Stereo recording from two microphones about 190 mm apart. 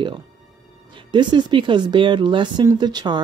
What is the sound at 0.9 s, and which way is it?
Speech, 25° right (ahead or behind).